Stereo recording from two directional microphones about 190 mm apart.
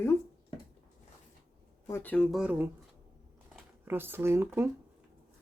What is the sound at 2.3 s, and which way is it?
Speech, 5° right (ahead or behind).